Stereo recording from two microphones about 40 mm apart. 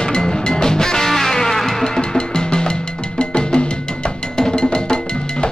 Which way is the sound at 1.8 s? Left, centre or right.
Centre.